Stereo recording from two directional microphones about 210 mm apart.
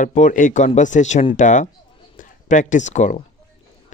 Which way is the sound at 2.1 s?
35° left (ahead or behind).